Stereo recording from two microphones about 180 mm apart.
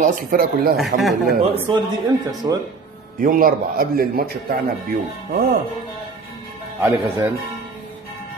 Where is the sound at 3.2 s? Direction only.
50° right (ahead or behind).